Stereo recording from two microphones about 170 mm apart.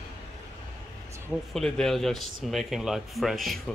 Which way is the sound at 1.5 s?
5° left (ahead or behind).